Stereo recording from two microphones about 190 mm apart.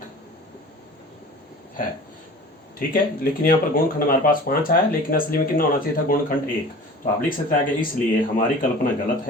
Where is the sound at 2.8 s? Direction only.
50° left (ahead or behind).